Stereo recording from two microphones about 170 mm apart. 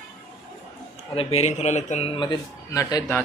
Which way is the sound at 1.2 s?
35° left (ahead or behind).